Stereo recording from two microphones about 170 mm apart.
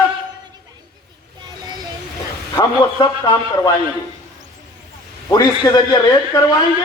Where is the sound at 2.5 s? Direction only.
20° left (ahead or behind).